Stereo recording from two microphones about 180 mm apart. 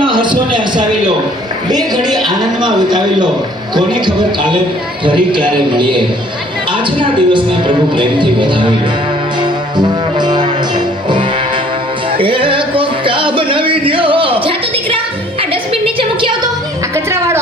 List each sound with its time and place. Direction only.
0.0 s a sound: 25° right (ahead or behind)
1.7 s speech: 25° right (ahead or behind)
9.4 s music: 25° right (ahead or behind)
16.9 s music: 15° right (ahead or behind)